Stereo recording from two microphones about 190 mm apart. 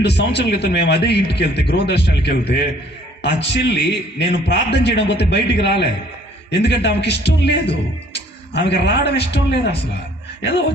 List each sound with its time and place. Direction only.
0.0 s a man's voice: 60° left (ahead or behind)